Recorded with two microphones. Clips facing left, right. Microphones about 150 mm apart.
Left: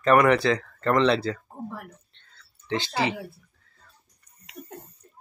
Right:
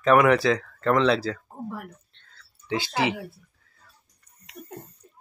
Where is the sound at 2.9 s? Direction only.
15° right (ahead or behind).